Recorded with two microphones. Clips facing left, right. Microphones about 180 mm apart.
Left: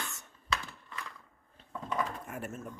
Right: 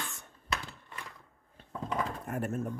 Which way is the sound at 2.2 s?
50° right (ahead or behind).